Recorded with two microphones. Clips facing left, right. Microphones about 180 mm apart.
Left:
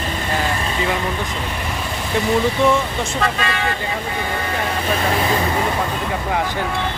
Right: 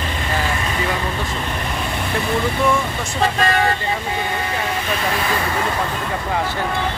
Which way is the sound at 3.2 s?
40° right (ahead or behind).